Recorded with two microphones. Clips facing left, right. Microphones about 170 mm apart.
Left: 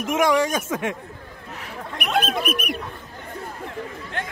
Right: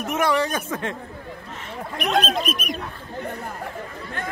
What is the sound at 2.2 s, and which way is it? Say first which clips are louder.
Speech: even; 60° left (ahead or behind).